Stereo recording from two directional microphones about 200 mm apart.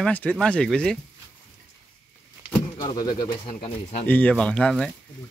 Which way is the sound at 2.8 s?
20° left (ahead or behind).